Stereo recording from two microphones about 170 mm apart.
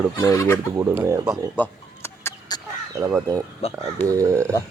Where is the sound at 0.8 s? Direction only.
15° right (ahead or behind).